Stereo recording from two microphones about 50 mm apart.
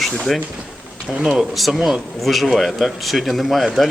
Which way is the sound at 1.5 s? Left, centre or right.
Centre.